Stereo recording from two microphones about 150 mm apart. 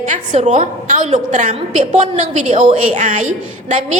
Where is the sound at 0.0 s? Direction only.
50° right (ahead or behind).